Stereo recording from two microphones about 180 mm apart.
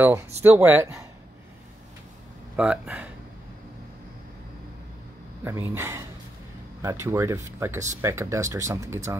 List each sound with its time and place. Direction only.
0.4 s speech: 15° right (ahead or behind)
2.5 s speech: 5° right (ahead or behind)
5.4 s speech: 15° right (ahead or behind)